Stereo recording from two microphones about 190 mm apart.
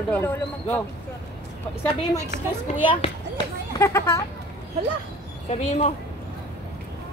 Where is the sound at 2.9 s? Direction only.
25° left (ahead or behind).